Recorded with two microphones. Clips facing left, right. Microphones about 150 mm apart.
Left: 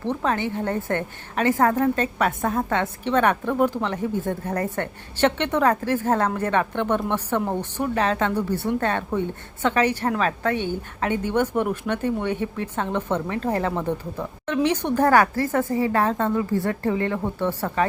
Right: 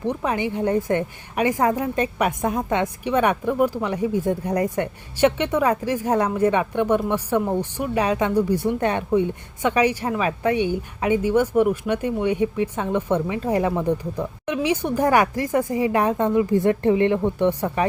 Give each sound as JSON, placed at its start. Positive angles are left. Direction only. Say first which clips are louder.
{"t": 0.0, "sound": "a woman's voice", "louder": "right 1 dB", "side_deg": -15}